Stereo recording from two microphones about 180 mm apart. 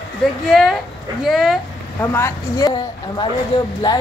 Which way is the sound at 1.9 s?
15° left (ahead or behind).